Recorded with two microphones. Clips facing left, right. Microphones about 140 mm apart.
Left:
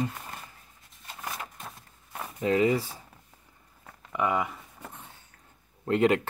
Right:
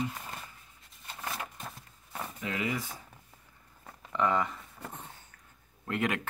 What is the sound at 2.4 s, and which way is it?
Speech, 35° left (ahead or behind).